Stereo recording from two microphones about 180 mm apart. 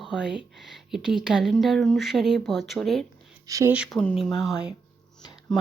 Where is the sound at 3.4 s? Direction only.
20° right (ahead or behind).